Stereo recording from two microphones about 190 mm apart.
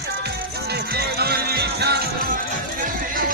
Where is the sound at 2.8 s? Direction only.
45° right (ahead or behind).